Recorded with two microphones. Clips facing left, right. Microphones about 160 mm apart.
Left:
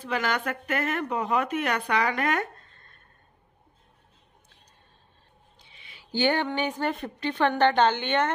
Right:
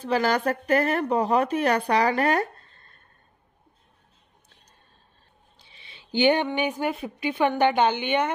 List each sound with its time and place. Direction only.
0.0 s a woman's voice: 35° right (ahead or behind)
5.6 s a sound: 30° right (ahead or behind)
6.1 s a woman's voice: 15° right (ahead or behind)